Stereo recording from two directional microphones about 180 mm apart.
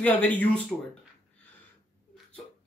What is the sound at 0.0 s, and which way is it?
Speech, 10° left (ahead or behind).